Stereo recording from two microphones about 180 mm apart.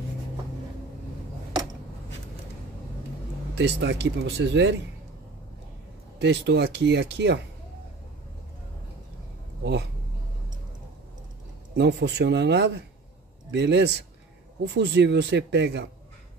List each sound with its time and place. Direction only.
3.5 s speech: 75° right (ahead or behind)
6.1 s speech: 75° right (ahead or behind)
11.7 s speech: 70° right (ahead or behind)